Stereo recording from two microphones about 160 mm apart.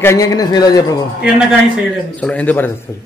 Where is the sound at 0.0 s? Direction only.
20° left (ahead or behind).